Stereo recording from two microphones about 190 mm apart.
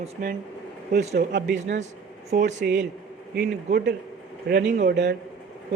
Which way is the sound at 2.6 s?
55° right (ahead or behind).